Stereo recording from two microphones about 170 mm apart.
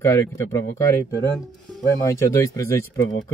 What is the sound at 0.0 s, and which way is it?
Speech, 15° left (ahead or behind).